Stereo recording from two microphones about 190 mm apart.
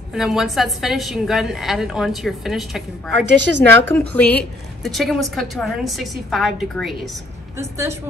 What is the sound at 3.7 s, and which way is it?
A woman's voice, 10° left (ahead or behind).